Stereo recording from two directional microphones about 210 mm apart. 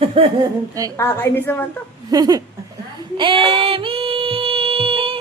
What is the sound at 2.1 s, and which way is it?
Laughter, 20° right (ahead or behind).